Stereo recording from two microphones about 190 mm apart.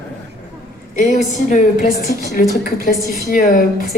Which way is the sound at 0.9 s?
40° left (ahead or behind).